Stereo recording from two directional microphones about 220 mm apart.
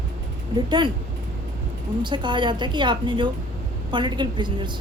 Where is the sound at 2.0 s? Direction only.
20° right (ahead or behind).